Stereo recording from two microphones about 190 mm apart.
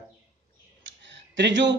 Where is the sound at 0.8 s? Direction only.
70° right (ahead or behind).